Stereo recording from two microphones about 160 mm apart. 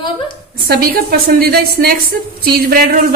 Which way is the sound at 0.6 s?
70° right (ahead or behind).